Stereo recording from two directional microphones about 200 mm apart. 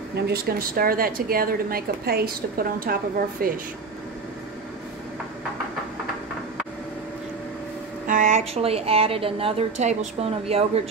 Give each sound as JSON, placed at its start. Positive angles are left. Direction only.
{"t": 0.3, "sound": "a woman's voice", "side_deg": -50}
{"t": 8.1, "sound": "a woman's voice", "side_deg": -40}